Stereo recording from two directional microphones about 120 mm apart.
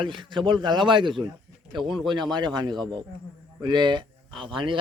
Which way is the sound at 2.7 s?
5° left (ahead or behind).